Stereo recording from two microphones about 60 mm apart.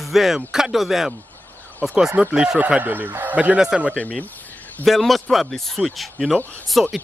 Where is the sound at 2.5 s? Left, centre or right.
Right.